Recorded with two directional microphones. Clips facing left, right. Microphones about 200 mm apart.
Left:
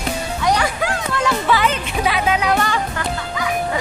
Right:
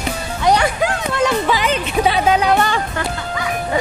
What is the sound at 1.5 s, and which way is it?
Music, 15° right (ahead or behind).